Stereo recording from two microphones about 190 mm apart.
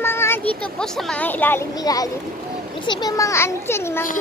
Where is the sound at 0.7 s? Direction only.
Centre (ahead or behind).